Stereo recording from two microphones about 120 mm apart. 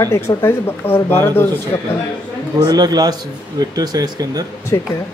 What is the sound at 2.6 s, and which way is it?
Speech, 35° right (ahead or behind).